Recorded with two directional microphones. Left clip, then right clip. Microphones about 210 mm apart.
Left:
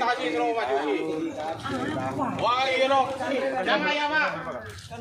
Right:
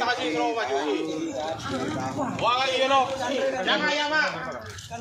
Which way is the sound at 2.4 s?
50° right (ahead or behind).